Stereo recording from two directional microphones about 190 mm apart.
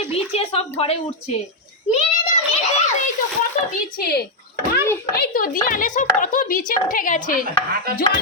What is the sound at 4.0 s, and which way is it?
Speech, 55° left (ahead or behind).